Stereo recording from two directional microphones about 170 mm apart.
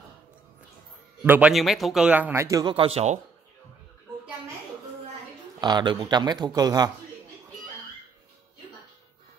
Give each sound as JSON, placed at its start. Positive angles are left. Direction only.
{"t": 1.2, "sound": "a man's voice", "side_deg": -10}
{"t": 5.6, "sound": "speech", "side_deg": -25}